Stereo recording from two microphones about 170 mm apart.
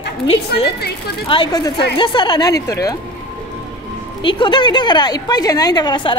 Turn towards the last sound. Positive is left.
turn(degrees=25)  # may be behind; listen again after turning